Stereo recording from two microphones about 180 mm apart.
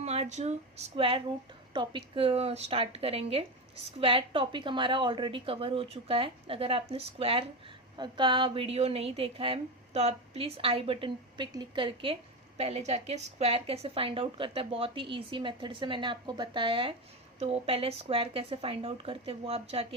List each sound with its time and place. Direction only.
0.0 s a woman's voice: 35° right (ahead or behind)